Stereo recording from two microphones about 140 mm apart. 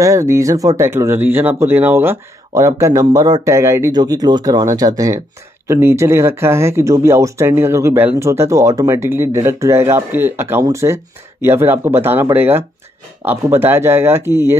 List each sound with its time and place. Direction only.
0.0 s speech: 20° right (ahead or behind)